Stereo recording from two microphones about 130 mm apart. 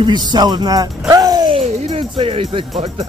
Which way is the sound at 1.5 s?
50° right (ahead or behind).